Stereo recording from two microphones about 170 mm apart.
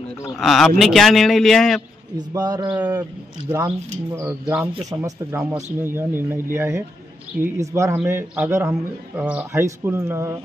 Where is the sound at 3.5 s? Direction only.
20° right (ahead or behind).